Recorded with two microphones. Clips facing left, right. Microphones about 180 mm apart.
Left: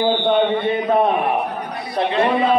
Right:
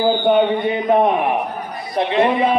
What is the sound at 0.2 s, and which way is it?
A man's voice, 15° right (ahead or behind).